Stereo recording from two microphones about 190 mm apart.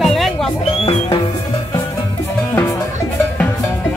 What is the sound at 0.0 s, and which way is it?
Music, centre (ahead or behind).